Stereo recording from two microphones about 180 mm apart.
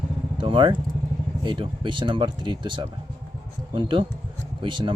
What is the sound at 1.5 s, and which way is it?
Speech, 25° right (ahead or behind).